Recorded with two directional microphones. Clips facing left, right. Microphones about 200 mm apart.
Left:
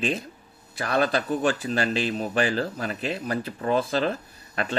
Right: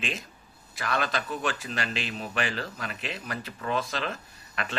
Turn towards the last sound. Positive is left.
turn(degrees=35)  # may be behind; listen again after turning